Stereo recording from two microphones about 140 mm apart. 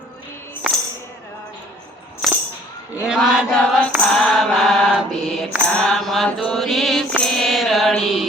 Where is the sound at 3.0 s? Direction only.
5° right (ahead or behind).